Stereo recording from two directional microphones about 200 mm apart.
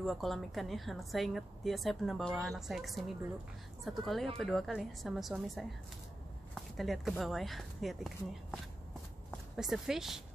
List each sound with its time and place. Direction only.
0.0 s a woman's voice: centre (ahead or behind)